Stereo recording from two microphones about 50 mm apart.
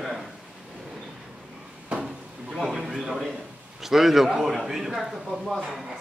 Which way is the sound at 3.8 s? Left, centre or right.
Centre.